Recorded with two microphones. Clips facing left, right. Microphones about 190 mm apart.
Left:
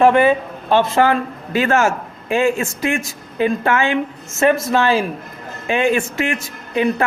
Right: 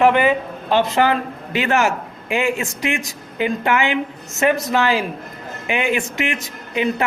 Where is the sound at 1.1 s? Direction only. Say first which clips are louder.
Left 2 dB; 20° right (ahead or behind).